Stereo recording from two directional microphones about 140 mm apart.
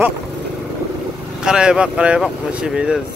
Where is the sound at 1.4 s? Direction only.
5° right (ahead or behind).